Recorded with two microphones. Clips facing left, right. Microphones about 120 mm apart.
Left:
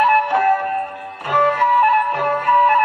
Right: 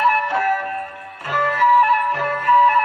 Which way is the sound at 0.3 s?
25° left (ahead or behind).